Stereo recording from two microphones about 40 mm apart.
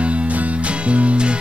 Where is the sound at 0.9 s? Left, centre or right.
Right.